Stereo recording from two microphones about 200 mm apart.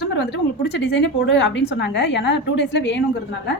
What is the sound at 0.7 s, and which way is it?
A woman's voice, 60° left (ahead or behind).